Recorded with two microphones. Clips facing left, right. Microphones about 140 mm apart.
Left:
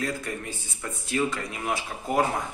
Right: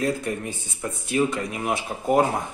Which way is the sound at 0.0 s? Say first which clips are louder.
Right 6 dB; 20° right (ahead or behind).